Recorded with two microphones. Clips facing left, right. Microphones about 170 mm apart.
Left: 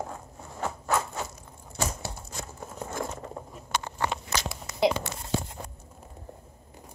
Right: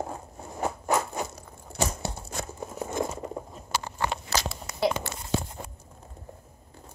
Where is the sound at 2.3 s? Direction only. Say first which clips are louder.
Right 4 dB; 55° right (ahead or behind).